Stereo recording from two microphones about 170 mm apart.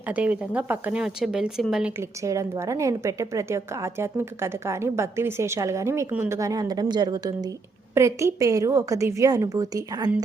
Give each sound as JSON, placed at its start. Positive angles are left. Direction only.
{"t": 0.1, "sound": "a woman's voice", "side_deg": -10}
{"t": 2.0, "sound": "a woman's voice", "side_deg": -20}